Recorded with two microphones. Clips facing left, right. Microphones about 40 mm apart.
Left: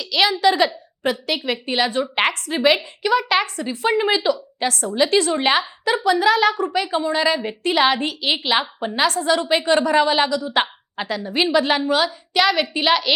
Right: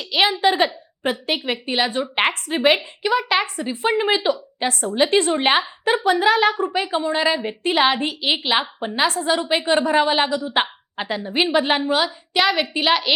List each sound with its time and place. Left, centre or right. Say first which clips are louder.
0.1 s a woman's voice: left 1 dB; right
1.6 s a woman's voice: left 1 dB; centre
1.9 s a woman's voice: left 1 dB; right
3.0 s a woman's voice: left 1 dB; centre